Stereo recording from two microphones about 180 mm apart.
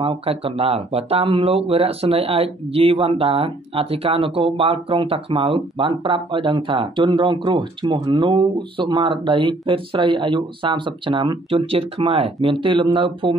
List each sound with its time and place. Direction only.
0.0 s speech: 30° right (ahead or behind)